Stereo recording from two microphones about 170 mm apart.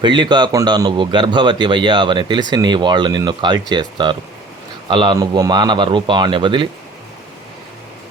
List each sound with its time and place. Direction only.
0.0 s a man's voice: 30° right (ahead or behind)